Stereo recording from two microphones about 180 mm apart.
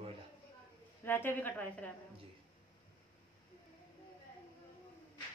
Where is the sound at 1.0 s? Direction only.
10° left (ahead or behind).